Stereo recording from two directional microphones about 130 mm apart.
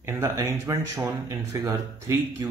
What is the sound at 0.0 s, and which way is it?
Speech, 20° right (ahead or behind).